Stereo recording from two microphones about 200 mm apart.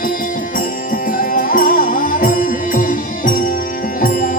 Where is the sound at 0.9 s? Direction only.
45° left (ahead or behind).